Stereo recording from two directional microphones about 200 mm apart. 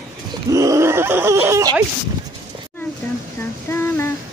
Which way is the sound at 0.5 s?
15° right (ahead or behind).